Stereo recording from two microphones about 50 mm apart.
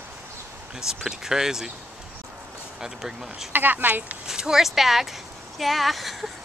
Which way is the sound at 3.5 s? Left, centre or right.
Right.